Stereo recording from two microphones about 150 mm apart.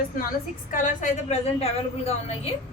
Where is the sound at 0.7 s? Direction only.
55° left (ahead or behind).